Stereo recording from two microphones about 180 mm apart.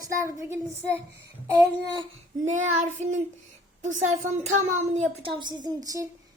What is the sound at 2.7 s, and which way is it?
Child singing, 45° right (ahead or behind).